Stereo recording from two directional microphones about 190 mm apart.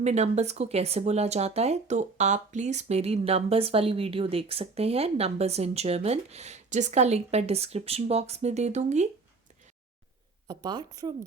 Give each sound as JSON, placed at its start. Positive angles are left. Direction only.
{"t": 0.0, "sound": "speech", "side_deg": -35}
{"t": 10.5, "sound": "a woman's voice", "side_deg": -20}